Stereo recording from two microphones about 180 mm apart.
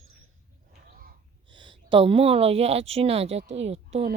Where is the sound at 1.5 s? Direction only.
25° right (ahead or behind).